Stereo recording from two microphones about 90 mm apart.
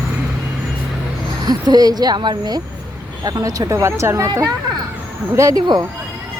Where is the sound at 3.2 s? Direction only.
40° right (ahead or behind).